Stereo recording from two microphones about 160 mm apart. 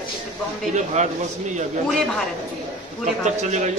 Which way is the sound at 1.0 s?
45° right (ahead or behind).